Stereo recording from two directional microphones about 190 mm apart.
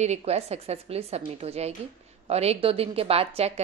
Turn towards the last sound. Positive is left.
turn(degrees=-30)  # may be behind; listen again after turning